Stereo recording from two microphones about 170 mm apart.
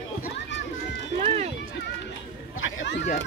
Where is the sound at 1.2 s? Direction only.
40° right (ahead or behind).